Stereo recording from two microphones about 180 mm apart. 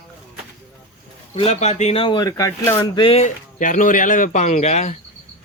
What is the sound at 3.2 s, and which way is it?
Speech, 45° left (ahead or behind).